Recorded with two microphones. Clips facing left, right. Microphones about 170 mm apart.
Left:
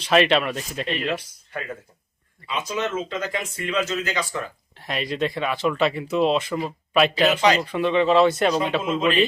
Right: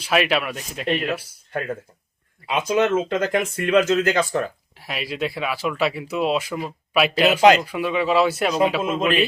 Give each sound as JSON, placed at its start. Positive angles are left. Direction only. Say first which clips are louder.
{"t": 0.0, "sound": "speech", "louder": "left 2 dB", "side_deg": -5}
{"t": 2.5, "sound": "speech", "louder": "right 7 dB", "side_deg": -55}
{"t": 4.8, "sound": "speech", "louder": "left 2 dB", "side_deg": -5}